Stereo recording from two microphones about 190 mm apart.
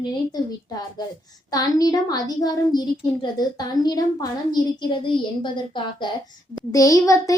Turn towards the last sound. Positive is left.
turn(degrees=15)  # may be behind; listen again after turning